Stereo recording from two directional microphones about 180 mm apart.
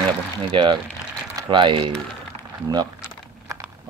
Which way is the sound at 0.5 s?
25° right (ahead or behind).